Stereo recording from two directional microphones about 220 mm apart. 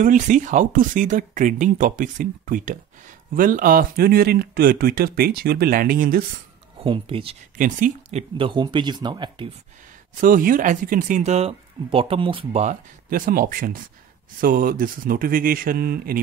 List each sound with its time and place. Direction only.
0.0 s speech: 35° right (ahead or behind)
6.8 s speech: 25° right (ahead or behind)
7.5 s speech: 35° right (ahead or behind); by 9.5 s 20° right (ahead or behind)
10.2 s speech: 40° right (ahead or behind)